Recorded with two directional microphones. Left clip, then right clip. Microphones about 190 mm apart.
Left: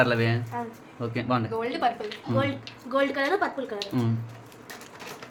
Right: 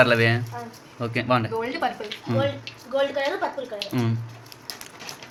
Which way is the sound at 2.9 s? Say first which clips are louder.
Right 1 dB; 35° left (ahead or behind).